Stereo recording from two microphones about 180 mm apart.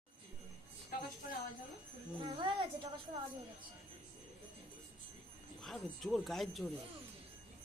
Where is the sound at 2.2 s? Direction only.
30° right (ahead or behind).